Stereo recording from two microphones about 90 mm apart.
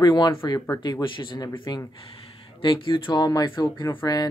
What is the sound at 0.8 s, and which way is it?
Speech, 60° left (ahead or behind).